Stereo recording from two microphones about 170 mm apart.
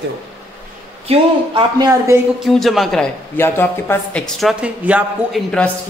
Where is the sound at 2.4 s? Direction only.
Centre (ahead or behind).